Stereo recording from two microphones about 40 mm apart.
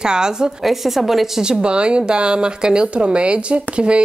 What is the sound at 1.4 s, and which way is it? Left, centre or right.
Speech, right.